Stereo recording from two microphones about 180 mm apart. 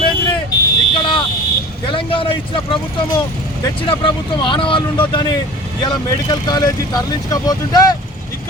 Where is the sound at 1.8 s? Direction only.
30° left (ahead or behind).